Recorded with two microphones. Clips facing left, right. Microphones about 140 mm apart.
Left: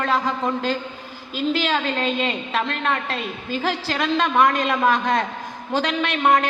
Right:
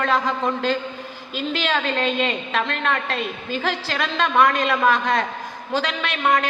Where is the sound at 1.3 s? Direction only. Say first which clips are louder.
Left 2 dB; 10° left (ahead or behind); by 6.5 s 25° left (ahead or behind).